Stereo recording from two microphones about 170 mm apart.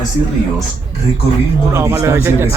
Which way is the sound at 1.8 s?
15° right (ahead or behind).